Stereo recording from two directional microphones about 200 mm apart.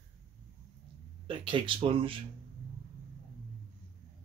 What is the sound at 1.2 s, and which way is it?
Speech, 25° right (ahead or behind).